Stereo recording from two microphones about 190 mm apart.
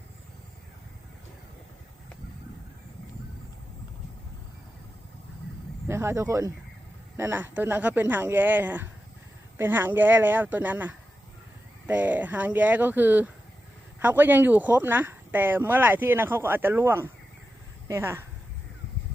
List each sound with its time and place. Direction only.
5.9 s speech: 15° right (ahead or behind)